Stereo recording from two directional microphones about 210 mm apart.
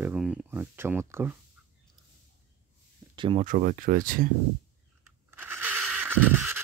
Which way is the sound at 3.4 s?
40° right (ahead or behind).